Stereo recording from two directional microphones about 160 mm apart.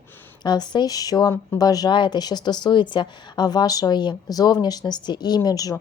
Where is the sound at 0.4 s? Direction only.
25° left (ahead or behind).